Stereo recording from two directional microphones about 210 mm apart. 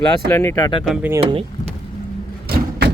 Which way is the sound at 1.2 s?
25° right (ahead or behind).